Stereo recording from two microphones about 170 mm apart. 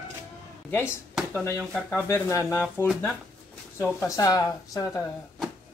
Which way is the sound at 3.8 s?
15° left (ahead or behind).